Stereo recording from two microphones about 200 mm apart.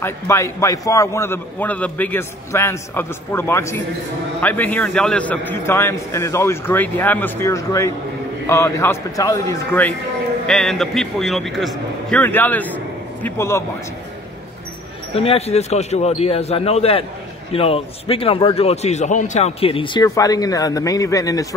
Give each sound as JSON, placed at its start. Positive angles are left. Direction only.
{"t": 0.0, "sound": "a man's voice", "side_deg": 15}
{"t": 15.1, "sound": "a man's voice", "side_deg": 30}